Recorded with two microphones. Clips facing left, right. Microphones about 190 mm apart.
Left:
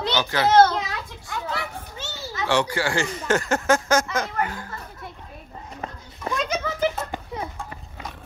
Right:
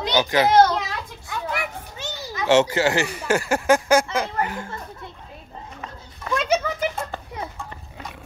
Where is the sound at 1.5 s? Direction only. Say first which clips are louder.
Right 3 dB; 15° right (ahead or behind).